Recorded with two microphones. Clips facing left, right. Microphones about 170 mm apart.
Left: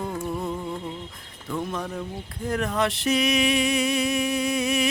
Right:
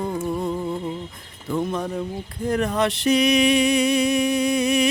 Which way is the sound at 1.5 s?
Centre (ahead or behind).